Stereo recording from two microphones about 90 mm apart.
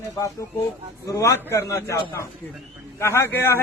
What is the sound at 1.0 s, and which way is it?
A man's voice, 35° left (ahead or behind).